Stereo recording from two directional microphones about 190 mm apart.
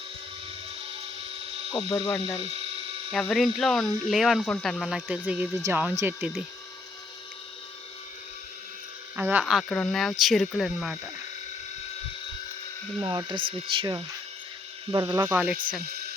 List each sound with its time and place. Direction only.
1.7 s speech: 20° left (ahead or behind)
3.1 s speech: centre (ahead or behind)
9.1 s speech: 10° right (ahead or behind)
13.0 s speech: 20° right (ahead or behind)